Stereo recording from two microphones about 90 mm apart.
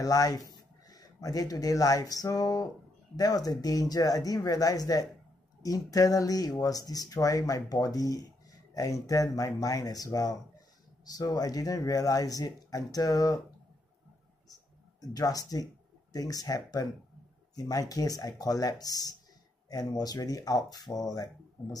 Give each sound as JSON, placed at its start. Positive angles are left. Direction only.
{"t": 0.0, "sound": "speech", "side_deg": 40}
{"t": 14.5, "sound": "speech", "side_deg": 45}